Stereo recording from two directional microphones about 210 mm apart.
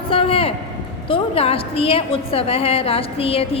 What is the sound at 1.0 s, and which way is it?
A woman's voice, 25° left (ahead or behind).